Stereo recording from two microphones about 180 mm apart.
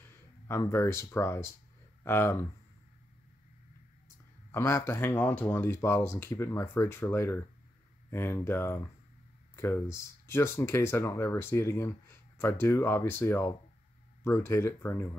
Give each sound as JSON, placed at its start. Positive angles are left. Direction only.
{"t": 0.5, "sound": "speech", "side_deg": 15}
{"t": 4.5, "sound": "speech", "side_deg": 15}